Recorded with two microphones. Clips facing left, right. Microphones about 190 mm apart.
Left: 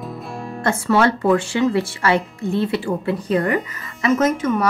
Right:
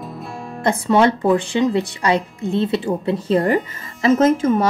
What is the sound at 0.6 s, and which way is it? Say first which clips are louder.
Speech: right 2 dB; 20° right (ahead or behind).